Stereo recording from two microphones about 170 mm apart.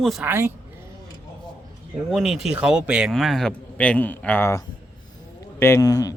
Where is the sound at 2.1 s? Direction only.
Centre (ahead or behind).